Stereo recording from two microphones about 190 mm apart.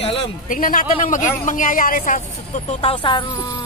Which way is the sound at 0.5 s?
45° left (ahead or behind).